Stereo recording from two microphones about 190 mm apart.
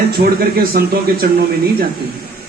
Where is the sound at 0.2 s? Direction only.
55° right (ahead or behind).